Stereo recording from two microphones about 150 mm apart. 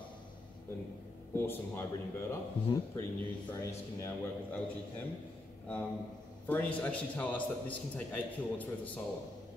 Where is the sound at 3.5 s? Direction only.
20° left (ahead or behind).